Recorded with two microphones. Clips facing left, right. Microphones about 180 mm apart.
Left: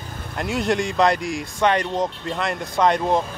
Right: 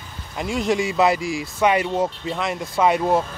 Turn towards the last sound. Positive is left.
turn(degrees=-5)  # may be behind; listen again after turning